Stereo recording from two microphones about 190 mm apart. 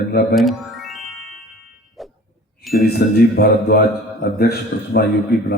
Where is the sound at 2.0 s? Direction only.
Centre (ahead or behind).